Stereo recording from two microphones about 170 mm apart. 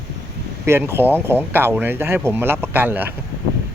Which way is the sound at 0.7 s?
15° right (ahead or behind).